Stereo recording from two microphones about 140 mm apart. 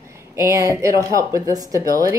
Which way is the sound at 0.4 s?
20° right (ahead or behind).